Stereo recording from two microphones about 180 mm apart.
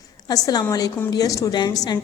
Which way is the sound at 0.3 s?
20° left (ahead or behind).